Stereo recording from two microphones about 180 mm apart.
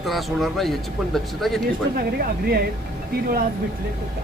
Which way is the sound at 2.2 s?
60° right (ahead or behind).